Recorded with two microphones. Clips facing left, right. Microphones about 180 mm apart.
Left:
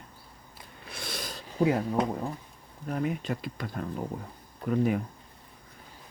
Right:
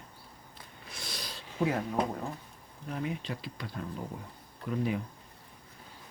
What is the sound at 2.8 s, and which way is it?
Speech, 50° left (ahead or behind).